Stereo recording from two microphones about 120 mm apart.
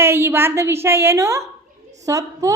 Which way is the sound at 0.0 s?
20° right (ahead or behind).